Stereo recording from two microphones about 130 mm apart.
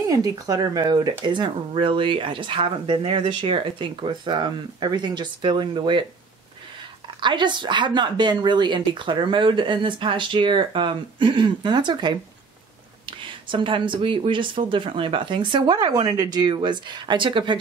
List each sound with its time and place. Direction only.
0.1 s speech: 30° right (ahead or behind)
7.2 s speech: 35° right (ahead or behind)